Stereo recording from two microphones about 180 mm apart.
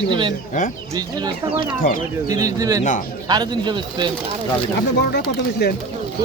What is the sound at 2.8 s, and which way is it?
Speech, 45° left (ahead or behind).